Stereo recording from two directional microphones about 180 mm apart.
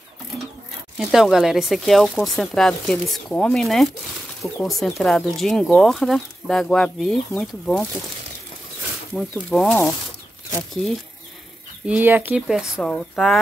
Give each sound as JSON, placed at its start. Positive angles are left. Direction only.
{"t": 0.9, "sound": "speech", "side_deg": 0}
{"t": 9.1, "sound": "speech", "side_deg": 5}
{"t": 11.8, "sound": "speech", "side_deg": -10}